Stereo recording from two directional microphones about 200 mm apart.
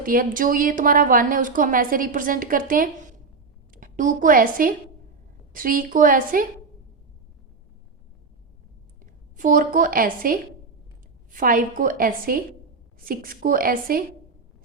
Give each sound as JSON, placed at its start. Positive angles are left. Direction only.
{"t": 0.0, "sound": "a woman's voice", "side_deg": -45}
{"t": 9.4, "sound": "a woman's voice", "side_deg": -40}